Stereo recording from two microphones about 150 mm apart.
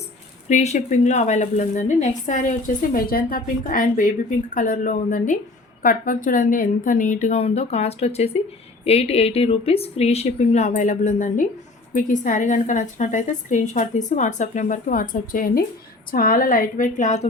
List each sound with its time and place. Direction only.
0.4 s a woman's voice: 50° left (ahead or behind)